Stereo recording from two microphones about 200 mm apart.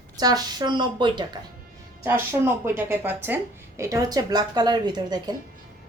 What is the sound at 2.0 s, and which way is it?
A woman's voice, 10° right (ahead or behind).